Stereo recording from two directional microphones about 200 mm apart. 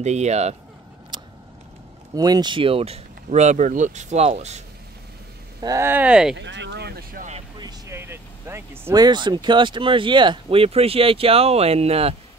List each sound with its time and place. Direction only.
0.0 s speech: 35° right (ahead or behind)
1.1 s a sound: 25° right (ahead or behind)
2.1 s speech: 20° right (ahead or behind)
5.6 s speech: 15° right (ahead or behind)
6.3 s speech: 65° right (ahead or behind); by 7.4 s 40° right (ahead or behind)
7.5 s speech: 15° right (ahead or behind)